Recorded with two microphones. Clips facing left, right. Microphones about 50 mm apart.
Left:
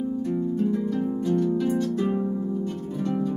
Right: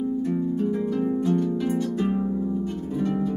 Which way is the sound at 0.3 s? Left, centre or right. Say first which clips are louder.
Even; centre.